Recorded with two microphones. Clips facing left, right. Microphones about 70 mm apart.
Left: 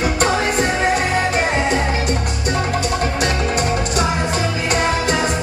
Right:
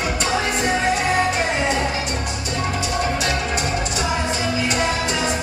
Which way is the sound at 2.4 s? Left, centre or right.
Left.